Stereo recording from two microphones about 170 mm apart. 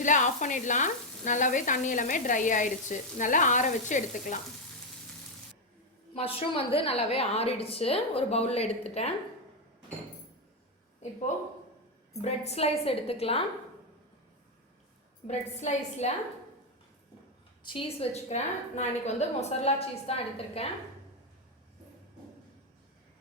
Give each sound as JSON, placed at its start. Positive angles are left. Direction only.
{"t": 0.0, "sound": "frying", "side_deg": 50}
{"t": 6.1, "sound": "a woman's voice", "side_deg": 35}
{"t": 12.2, "sound": "a woman's voice", "side_deg": 40}
{"t": 15.3, "sound": "a woman's voice", "side_deg": 40}
{"t": 17.6, "sound": "a woman's voice", "side_deg": 30}